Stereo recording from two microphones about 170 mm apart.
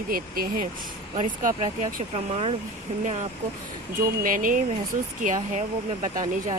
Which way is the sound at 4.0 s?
55° right (ahead or behind).